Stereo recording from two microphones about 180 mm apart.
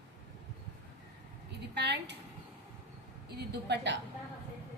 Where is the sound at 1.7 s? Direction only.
70° right (ahead or behind).